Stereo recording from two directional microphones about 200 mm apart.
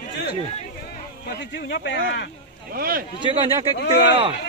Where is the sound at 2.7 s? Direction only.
45° right (ahead or behind).